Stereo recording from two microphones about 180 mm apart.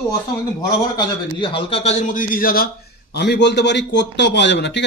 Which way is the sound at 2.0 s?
50° left (ahead or behind).